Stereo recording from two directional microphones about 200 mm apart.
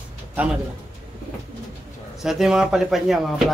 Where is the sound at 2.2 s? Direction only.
Centre (ahead or behind).